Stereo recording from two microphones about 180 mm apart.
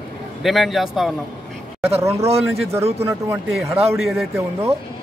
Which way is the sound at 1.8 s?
35° right (ahead or behind).